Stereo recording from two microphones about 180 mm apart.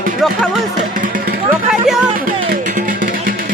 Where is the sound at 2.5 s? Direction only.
50° right (ahead or behind).